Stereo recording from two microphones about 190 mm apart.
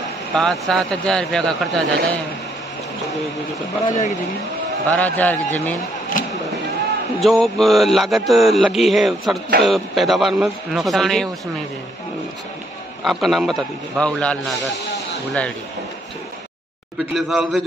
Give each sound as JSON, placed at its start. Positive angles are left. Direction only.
{"t": 0.4, "sound": "speech", "side_deg": 0}
{"t": 3.8, "sound": "speech", "side_deg": 40}
{"t": 4.8, "sound": "a man's voice", "side_deg": 10}
{"t": 6.2, "sound": "a sound", "side_deg": 45}
{"t": 7.2, "sound": "speech", "side_deg": 0}
{"t": 13.0, "sound": "speech", "side_deg": 0}
{"t": 17.1, "sound": "speech", "side_deg": 0}